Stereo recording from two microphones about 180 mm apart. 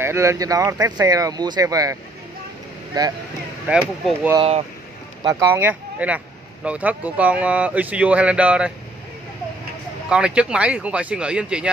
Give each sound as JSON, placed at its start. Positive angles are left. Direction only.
{"t": 0.0, "sound": "speech", "side_deg": -15}
{"t": 3.6, "sound": "speech", "side_deg": -5}
{"t": 4.4, "sound": "speech", "side_deg": -35}
{"t": 5.2, "sound": "speech", "side_deg": -15}
{"t": 10.0, "sound": "speech", "side_deg": -5}